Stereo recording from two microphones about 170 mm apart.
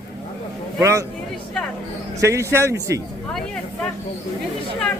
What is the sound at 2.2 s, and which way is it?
Speech, 15° right (ahead or behind).